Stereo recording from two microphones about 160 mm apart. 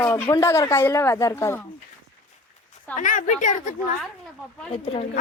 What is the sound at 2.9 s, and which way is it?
Speech, 55° left (ahead or behind).